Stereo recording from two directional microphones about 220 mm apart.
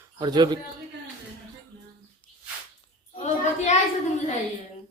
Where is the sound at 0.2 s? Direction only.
20° right (ahead or behind).